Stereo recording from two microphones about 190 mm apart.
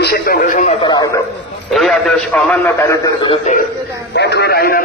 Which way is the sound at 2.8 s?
15° left (ahead or behind).